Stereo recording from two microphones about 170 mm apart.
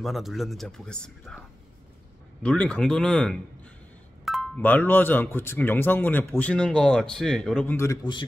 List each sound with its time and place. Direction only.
0.0 s speech: centre (ahead or behind)
2.4 s speech: 5° left (ahead or behind)
8.0 s speech: 25° left (ahead or behind)